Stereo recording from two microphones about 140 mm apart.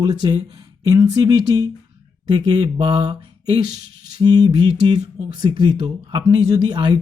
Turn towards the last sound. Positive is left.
turn(degrees=-30)  # may be behind; listen again after turning